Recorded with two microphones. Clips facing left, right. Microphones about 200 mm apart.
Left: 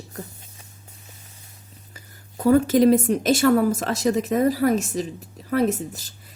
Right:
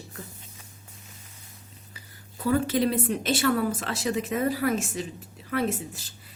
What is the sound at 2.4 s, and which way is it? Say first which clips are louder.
Speech: left 8 dB; 45° left (ahead or behind).